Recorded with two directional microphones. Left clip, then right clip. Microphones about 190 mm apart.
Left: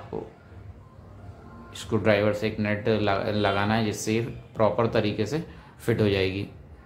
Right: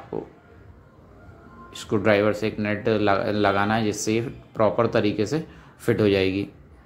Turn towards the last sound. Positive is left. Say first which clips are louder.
# right 4 dB
turn(degrees=-20)  # may be behind; listen again after turning